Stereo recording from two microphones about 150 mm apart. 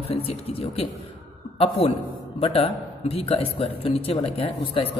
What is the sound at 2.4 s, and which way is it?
Speech, 40° left (ahead or behind).